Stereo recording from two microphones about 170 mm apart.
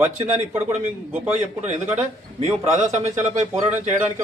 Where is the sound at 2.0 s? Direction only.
40° right (ahead or behind).